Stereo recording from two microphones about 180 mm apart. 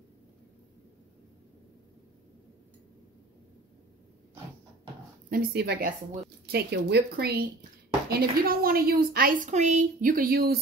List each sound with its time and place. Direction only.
5.3 s a woman's voice: 55° right (ahead or behind)